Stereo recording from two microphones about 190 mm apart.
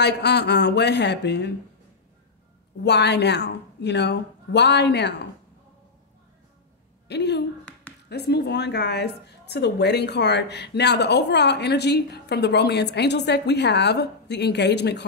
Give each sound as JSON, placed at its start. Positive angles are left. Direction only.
{"t": 0.0, "sound": "a woman's voice", "side_deg": 60}
{"t": 2.8, "sound": "a woman's voice", "side_deg": 65}
{"t": 7.1, "sound": "a woman's voice", "side_deg": 65}